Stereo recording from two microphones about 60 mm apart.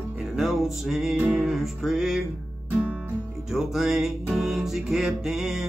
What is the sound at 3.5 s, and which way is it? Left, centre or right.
Music, centre.